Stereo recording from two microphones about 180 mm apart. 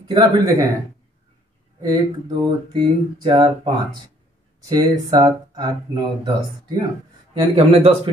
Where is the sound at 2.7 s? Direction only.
25° right (ahead or behind).